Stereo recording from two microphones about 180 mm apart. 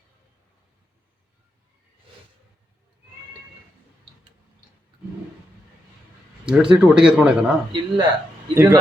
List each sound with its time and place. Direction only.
6.4 s speech: 5° right (ahead or behind)
7.7 s speech: 25° right (ahead or behind)
8.5 s a man's voice: 10° right (ahead or behind)